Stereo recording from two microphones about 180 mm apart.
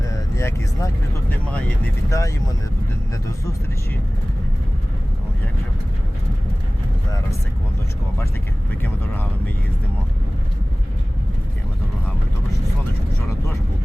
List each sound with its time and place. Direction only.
0.1 s vehicle: 15° left (ahead or behind)
1.5 s speech: 5° left (ahead or behind)
2.0 s speech: 15° left (ahead or behind)